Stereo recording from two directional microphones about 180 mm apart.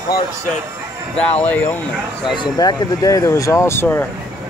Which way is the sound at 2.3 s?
25° left (ahead or behind).